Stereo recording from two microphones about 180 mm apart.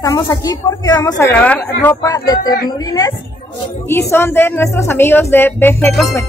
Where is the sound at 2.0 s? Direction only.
20° left (ahead or behind).